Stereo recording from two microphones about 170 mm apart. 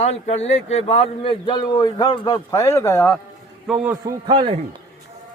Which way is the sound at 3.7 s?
5° right (ahead or behind).